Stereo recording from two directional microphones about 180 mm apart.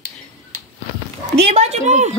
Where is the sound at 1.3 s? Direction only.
35° right (ahead or behind).